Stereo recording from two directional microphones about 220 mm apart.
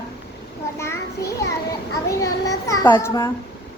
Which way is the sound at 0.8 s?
15° left (ahead or behind).